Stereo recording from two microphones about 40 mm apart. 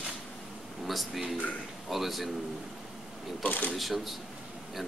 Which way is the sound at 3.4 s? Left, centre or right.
Left.